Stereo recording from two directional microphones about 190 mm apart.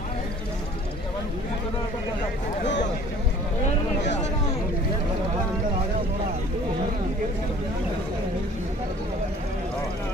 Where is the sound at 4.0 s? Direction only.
70° left (ahead or behind).